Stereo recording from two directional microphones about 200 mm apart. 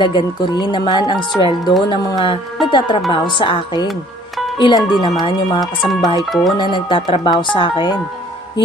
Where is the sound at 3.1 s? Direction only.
25° left (ahead or behind).